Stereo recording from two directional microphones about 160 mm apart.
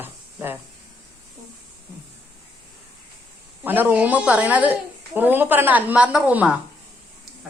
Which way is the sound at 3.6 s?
10° right (ahead or behind).